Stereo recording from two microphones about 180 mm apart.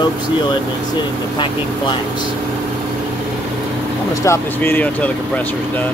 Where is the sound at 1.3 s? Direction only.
25° left (ahead or behind).